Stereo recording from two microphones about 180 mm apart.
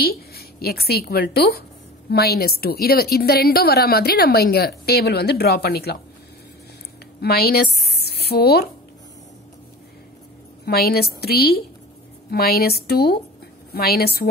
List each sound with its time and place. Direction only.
0.0 s a woman's voice: 60° left (ahead or behind)
7.2 s speech: 60° left (ahead or behind)
10.6 s a woman's voice: 60° left (ahead or behind)